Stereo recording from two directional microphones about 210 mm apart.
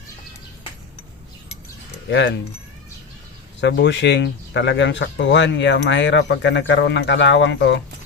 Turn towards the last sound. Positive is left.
turn(degrees=55)  # may be behind; listen again after turning